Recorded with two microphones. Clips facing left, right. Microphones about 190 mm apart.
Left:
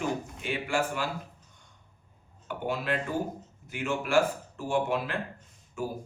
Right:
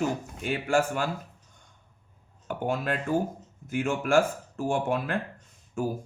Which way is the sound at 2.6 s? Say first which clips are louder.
Right 2 dB; 45° right (ahead or behind).